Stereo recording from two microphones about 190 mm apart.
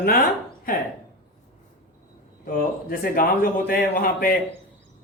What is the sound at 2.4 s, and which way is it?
A man's voice, 50° left (ahead or behind).